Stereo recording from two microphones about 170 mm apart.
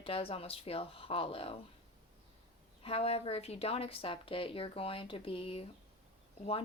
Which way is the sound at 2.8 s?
35° left (ahead or behind).